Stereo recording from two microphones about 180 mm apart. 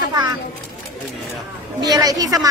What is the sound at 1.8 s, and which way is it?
Speech, 20° right (ahead or behind).